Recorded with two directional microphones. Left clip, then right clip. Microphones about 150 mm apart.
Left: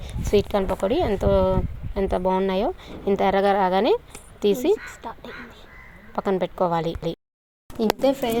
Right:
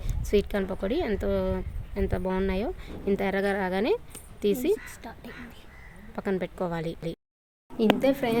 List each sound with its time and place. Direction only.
0.0 s speech: 5° right (ahead or behind)
5.0 s speech: 20° right (ahead or behind)
6.1 s speech: centre (ahead or behind)
7.8 s speech: 15° left (ahead or behind)